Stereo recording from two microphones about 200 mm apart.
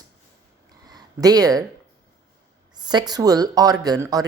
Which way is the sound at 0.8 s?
20° right (ahead or behind).